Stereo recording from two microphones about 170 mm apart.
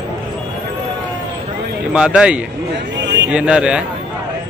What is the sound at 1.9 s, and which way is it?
A man's voice, 5° right (ahead or behind).